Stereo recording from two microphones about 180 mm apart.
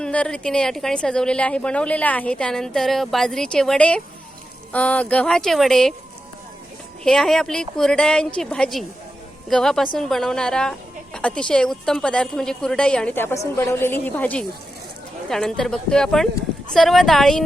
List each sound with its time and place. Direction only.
0.0 s a woman's voice: 5° left (ahead or behind)
7.0 s a woman's voice: 5° left (ahead or behind)